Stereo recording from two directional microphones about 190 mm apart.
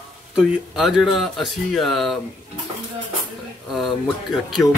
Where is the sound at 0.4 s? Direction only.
Centre (ahead or behind).